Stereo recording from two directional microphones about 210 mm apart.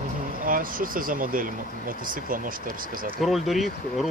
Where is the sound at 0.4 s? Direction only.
40° right (ahead or behind).